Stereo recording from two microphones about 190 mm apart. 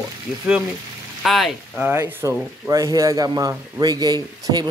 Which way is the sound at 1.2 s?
Centre (ahead or behind).